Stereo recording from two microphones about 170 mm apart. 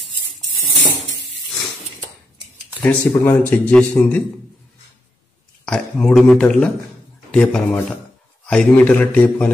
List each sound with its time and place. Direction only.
2.8 s a man's voice: 10° left (ahead or behind)
5.7 s a man's voice: 5° left (ahead or behind)